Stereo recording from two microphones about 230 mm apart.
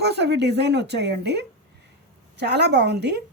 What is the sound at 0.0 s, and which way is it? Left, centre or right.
A woman's voice, right.